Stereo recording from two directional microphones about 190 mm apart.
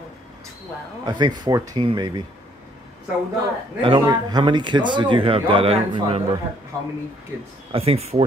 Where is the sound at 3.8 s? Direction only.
25° right (ahead or behind).